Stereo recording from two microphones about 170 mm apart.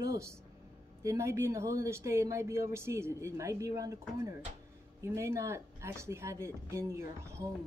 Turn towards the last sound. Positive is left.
turn(degrees=-15)  # may be behind; listen again after turning